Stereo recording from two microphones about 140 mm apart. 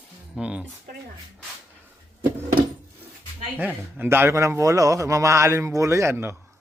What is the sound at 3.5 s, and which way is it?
Speech, 10° right (ahead or behind).